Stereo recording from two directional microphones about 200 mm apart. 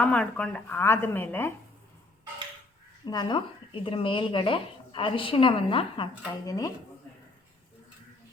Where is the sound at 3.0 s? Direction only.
20° left (ahead or behind).